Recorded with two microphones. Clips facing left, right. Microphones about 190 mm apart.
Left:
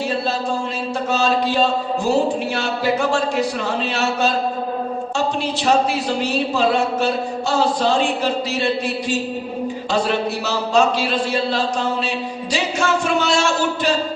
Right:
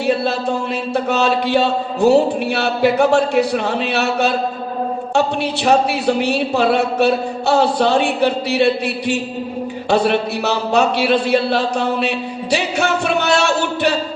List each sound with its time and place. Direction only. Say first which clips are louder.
1.1 s a man's voice: right 2 dB; 65° right (ahead or behind)